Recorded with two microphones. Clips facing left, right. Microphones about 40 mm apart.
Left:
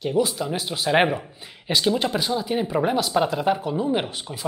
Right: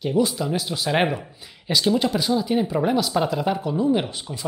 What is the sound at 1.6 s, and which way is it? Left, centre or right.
Speech, centre.